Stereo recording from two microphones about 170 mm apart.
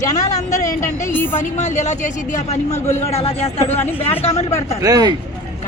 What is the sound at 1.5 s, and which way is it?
A man's voice, 45° left (ahead or behind).